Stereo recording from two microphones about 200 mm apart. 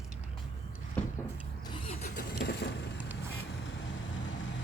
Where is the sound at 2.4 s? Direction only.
60° left (ahead or behind).